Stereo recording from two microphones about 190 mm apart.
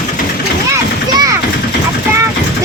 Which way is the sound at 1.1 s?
20° right (ahead or behind).